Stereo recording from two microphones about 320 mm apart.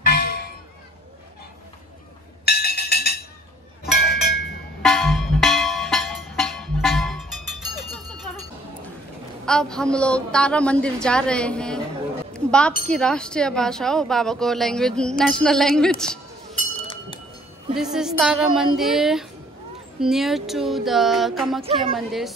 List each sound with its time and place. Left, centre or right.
0.0 s music: left
2.4 s music: left
3.8 s a sound: centre
4.8 s music: centre
9.5 s speech: centre
12.4 s a sound: centre
12.9 s speech: centre
16.8 s a sound: centre
17.9 s speech: centre